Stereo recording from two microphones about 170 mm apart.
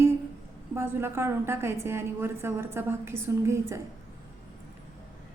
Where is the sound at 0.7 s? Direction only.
15° right (ahead or behind).